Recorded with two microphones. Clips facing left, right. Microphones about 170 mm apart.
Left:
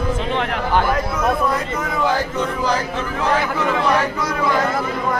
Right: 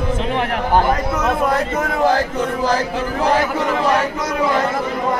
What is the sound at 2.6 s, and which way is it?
Speech, 40° right (ahead or behind).